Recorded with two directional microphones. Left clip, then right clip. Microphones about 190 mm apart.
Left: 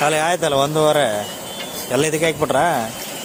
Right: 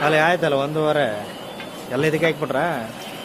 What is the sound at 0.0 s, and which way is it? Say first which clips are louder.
A man's voice: even; 20° left (ahead or behind).